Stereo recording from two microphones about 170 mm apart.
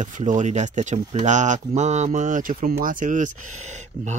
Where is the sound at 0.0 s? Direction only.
45° right (ahead or behind).